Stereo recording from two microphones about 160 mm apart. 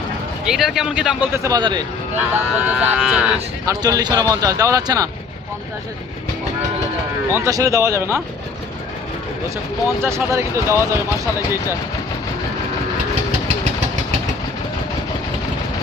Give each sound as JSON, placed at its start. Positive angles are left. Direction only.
{"t": 0.4, "sound": "speech", "side_deg": 0}
{"t": 2.3, "sound": "speech", "side_deg": -10}
{"t": 3.7, "sound": "speech", "side_deg": -20}
{"t": 7.3, "sound": "speech", "side_deg": -15}
{"t": 10.0, "sound": "speech", "side_deg": -15}